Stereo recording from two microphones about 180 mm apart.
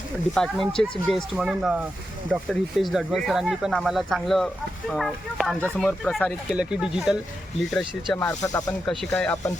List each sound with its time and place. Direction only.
0.3 s speech: centre (ahead or behind)
8.2 s speech: 15° left (ahead or behind)
8.9 s speech: 5° left (ahead or behind)